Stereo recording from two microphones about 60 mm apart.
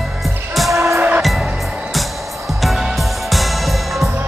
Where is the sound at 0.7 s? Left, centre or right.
Right.